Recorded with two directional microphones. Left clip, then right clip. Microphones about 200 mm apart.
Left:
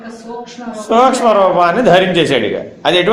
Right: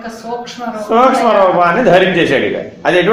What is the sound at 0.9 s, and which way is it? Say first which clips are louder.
A man's voice: even; 25° left (ahead or behind).